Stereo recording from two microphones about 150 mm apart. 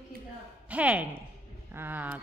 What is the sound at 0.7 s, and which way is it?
Speech, 10° right (ahead or behind).